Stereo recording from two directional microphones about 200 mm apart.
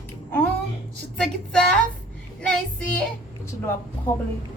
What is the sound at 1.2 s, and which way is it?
A woman's voice, 5° left (ahead or behind).